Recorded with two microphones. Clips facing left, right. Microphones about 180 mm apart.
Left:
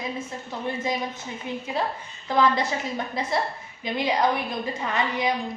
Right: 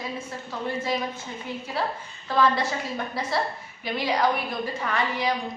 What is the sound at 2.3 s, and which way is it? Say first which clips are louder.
A woman's voice: left 1 dB; 15° left (ahead or behind).